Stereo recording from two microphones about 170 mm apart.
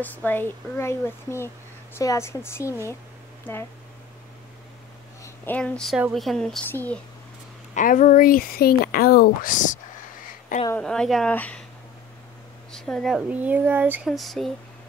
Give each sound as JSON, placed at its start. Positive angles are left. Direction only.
{"t": 0.0, "sound": "speech", "side_deg": 10}
{"t": 5.2, "sound": "speech", "side_deg": 10}
{"t": 7.7, "sound": "speech", "side_deg": 50}
{"t": 10.7, "sound": "speech", "side_deg": 5}
{"t": 12.7, "sound": "speech", "side_deg": 5}
{"t": 14.0, "sound": "speech", "side_deg": 0}